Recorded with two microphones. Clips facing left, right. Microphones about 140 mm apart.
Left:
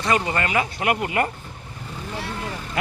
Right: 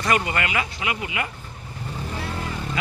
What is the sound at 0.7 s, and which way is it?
Speech, 55° left (ahead or behind).